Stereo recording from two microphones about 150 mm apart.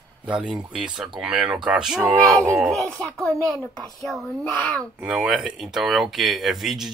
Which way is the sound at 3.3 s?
20° right (ahead or behind).